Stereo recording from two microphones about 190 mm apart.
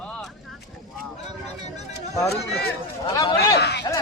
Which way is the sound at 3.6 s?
60° left (ahead or behind).